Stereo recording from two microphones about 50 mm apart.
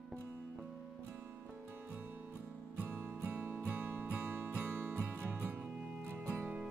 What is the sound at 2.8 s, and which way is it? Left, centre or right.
Music, right.